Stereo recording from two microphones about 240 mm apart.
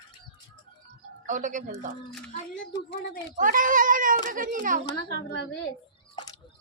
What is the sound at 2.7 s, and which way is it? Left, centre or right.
Speech, left.